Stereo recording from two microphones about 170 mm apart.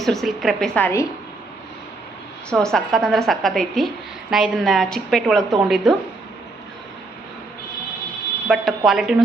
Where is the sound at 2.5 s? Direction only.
5° left (ahead or behind).